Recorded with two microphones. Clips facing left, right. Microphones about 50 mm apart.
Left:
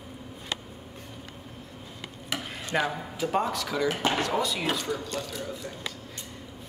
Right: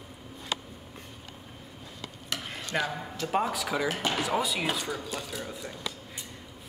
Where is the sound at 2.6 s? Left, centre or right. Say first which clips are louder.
Left 3 dB; centre.